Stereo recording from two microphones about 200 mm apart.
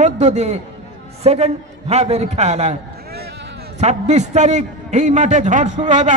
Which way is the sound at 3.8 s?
35° right (ahead or behind).